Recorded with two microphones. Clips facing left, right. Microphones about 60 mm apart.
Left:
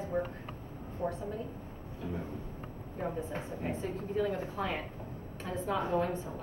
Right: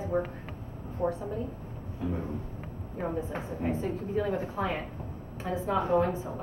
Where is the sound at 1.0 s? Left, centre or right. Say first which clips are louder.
Right 5 dB; centre.